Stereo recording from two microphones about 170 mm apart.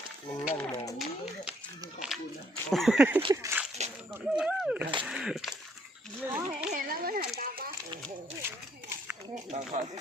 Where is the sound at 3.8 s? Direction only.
40° right (ahead or behind).